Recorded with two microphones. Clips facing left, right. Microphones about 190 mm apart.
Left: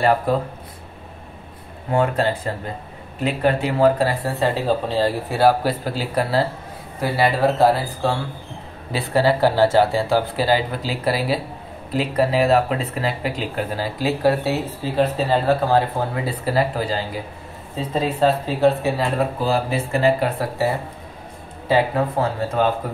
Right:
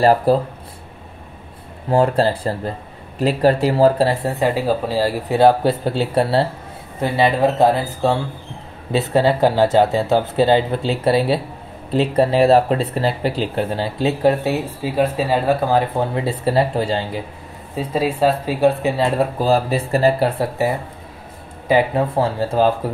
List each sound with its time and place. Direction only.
0.0 s speech: 35° right (ahead or behind)
1.9 s speech: 30° right (ahead or behind); by 5.1 s 10° right (ahead or behind)
5.3 s speech: 25° right (ahead or behind)
16.3 s speech: 25° right (ahead or behind)
17.7 s speech: 10° right (ahead or behind)
19.4 s speech: 35° right (ahead or behind)
21.6 s speech: 15° right (ahead or behind)
22.1 s speech: 30° right (ahead or behind)